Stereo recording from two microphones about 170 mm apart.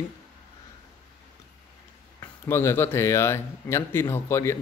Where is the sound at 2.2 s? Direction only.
15° left (ahead or behind).